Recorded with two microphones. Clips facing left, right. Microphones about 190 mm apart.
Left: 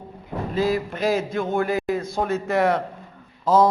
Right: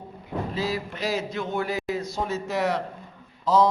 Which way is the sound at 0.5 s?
50° left (ahead or behind).